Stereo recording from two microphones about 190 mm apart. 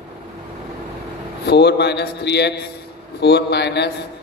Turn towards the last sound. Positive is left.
turn(degrees=60)  # may be behind; listen again after turning